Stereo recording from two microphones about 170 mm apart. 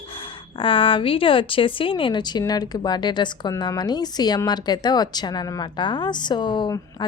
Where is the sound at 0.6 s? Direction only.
30° left (ahead or behind).